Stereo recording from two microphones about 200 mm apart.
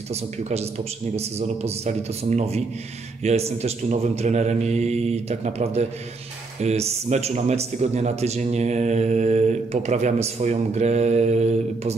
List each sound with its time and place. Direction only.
0.1 s speech: 35° right (ahead or behind)